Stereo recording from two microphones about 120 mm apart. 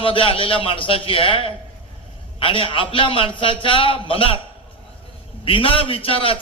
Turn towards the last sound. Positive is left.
turn(degrees=50)  # may be behind; listen again after turning